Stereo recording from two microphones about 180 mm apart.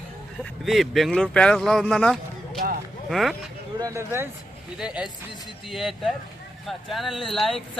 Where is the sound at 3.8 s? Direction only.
15° right (ahead or behind).